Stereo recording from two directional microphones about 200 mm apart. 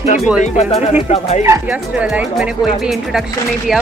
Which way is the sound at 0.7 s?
30° left (ahead or behind).